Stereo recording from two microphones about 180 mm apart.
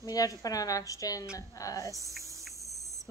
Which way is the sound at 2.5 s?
Centre (ahead or behind).